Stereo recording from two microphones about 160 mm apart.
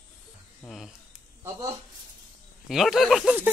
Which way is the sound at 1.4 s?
20° right (ahead or behind).